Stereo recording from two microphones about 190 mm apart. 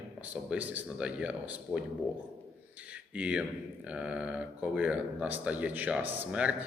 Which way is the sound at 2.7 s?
5° right (ahead or behind).